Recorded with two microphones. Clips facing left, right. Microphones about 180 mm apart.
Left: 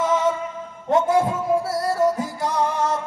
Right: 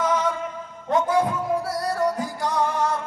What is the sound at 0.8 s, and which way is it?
Music, 25° left (ahead or behind).